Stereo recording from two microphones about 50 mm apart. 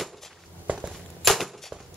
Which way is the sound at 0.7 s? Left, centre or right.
Right.